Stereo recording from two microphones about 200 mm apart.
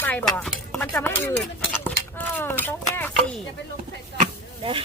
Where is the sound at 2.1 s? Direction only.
10° left (ahead or behind).